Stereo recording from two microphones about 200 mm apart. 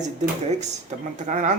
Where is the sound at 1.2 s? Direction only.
40° right (ahead or behind).